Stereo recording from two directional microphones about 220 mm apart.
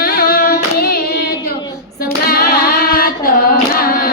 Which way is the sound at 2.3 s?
45° left (ahead or behind).